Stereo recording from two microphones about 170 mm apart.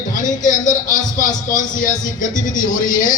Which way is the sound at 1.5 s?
50° left (ahead or behind).